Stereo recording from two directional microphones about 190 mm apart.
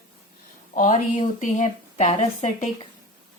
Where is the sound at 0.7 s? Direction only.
40° left (ahead or behind).